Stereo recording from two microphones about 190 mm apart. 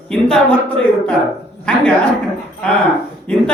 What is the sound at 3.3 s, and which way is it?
Speech, 5° left (ahead or behind).